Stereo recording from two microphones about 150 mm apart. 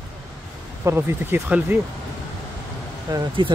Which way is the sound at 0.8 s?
15° right (ahead or behind).